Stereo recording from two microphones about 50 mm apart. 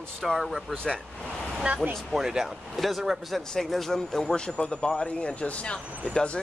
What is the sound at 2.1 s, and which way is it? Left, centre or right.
Speech, centre.